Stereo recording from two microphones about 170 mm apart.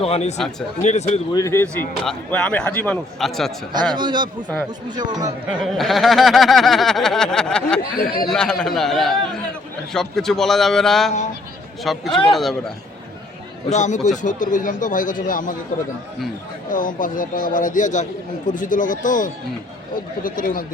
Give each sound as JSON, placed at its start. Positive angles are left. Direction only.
{"t": 0.0, "sound": "speech", "side_deg": 40}
{"t": 1.3, "sound": "speech", "side_deg": 20}
{"t": 2.0, "sound": "speech", "side_deg": 5}
{"t": 3.7, "sound": "a man's voice", "side_deg": -25}
{"t": 5.5, "sound": "snicker", "side_deg": 0}
{"t": 7.9, "sound": "speech", "side_deg": 60}
{"t": 8.3, "sound": "snicker", "side_deg": 5}
{"t": 13.7, "sound": "speech", "side_deg": 45}
{"t": 16.6, "sound": "speech", "side_deg": 55}